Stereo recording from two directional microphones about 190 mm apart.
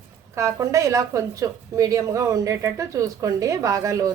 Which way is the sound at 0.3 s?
15° right (ahead or behind).